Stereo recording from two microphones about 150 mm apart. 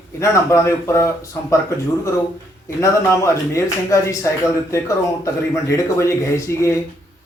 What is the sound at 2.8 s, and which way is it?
Speech, 20° left (ahead or behind).